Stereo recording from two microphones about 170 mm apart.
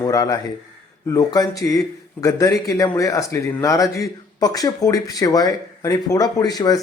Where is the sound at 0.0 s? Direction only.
20° left (ahead or behind).